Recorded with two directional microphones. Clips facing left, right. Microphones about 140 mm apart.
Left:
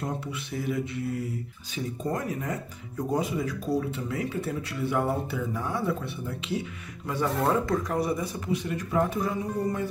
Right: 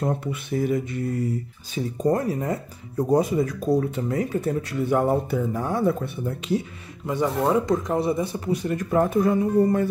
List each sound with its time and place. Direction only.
0.0 s speech: 50° right (ahead or behind)
7.1 s speech: 20° right (ahead or behind)
8.5 s speech: 45° right (ahead or behind)